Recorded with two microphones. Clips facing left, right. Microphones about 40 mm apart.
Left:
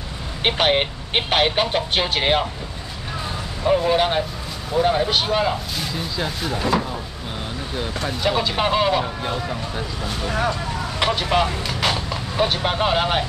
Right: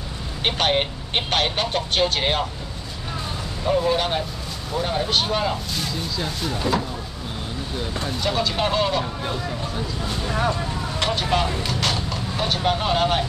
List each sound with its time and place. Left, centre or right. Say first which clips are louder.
0.4 s speech: left 2 dB; centre
3.6 s speech: left 3 dB; centre
8.2 s speech: left 2 dB; centre
11.0 s speech: left 3 dB; centre